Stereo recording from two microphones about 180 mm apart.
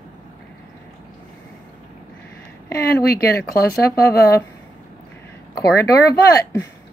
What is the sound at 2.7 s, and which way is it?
Speech, 65° left (ahead or behind).